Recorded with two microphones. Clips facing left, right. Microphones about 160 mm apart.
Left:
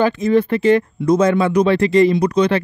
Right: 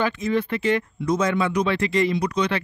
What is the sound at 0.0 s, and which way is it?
Speech, 40° left (ahead or behind).